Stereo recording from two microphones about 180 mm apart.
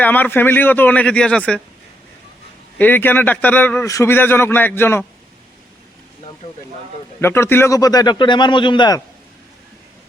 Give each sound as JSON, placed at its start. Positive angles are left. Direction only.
{"t": 0.0, "sound": "a man's voice", "side_deg": 10}
{"t": 2.7, "sound": "a man's voice", "side_deg": 10}
{"t": 7.2, "sound": "speech", "side_deg": 15}